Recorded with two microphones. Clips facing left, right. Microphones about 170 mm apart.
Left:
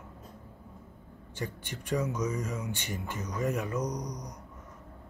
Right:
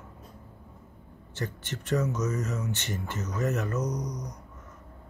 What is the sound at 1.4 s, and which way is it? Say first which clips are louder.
Speech: right 3 dB; 10° left (ahead or behind).